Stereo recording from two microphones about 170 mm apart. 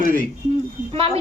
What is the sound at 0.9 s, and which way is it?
Speech, 35° right (ahead or behind).